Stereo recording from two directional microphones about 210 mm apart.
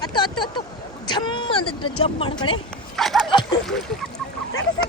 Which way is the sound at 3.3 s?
20° left (ahead or behind).